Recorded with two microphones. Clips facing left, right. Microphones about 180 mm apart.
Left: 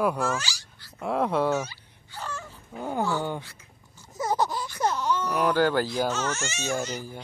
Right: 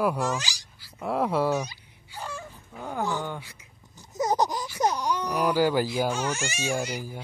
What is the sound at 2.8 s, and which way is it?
Speech, 15° left (ahead or behind).